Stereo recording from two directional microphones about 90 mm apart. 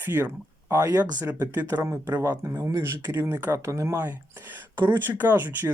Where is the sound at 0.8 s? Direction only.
40° right (ahead or behind).